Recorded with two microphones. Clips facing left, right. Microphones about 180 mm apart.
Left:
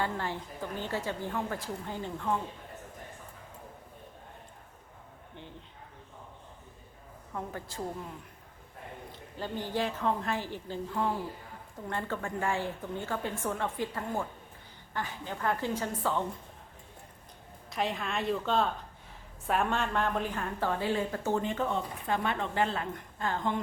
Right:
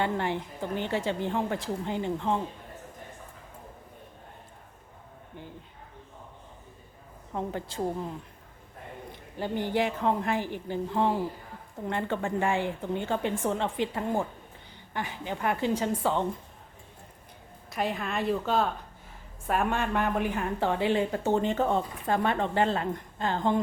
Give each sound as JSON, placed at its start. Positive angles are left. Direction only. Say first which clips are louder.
{"t": 0.0, "sound": "a woman's voice", "louder": "right 5 dB", "side_deg": -20}
{"t": 7.3, "sound": "a woman's voice", "louder": "right 6 dB", "side_deg": -25}
{"t": 9.1, "sound": "a woman's voice", "louder": "right 6 dB", "side_deg": -15}
{"t": 17.7, "sound": "a woman's voice", "louder": "right 2 dB", "side_deg": -5}
{"t": 21.6, "sound": "a woman's voice", "louder": "right 5 dB", "side_deg": -40}